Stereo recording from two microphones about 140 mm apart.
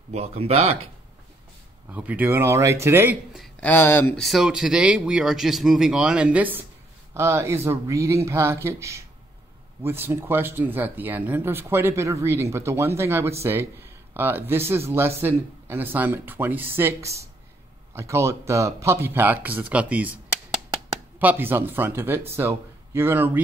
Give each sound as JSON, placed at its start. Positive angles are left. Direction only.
{"t": 0.1, "sound": "speech", "side_deg": -50}
{"t": 1.9, "sound": "speech", "side_deg": -10}
{"t": 3.6, "sound": "speech", "side_deg": 15}
{"t": 4.1, "sound": "a man's voice", "side_deg": 0}
{"t": 21.2, "sound": "speech", "side_deg": -15}